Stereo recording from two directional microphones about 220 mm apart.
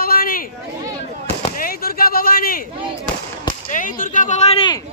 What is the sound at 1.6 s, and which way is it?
Speech, 40° left (ahead or behind).